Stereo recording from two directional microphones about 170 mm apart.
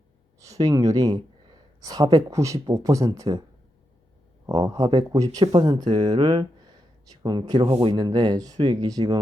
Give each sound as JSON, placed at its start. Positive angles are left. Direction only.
{"t": 0.3, "sound": "speech", "side_deg": -20}
{"t": 4.4, "sound": "speech", "side_deg": -20}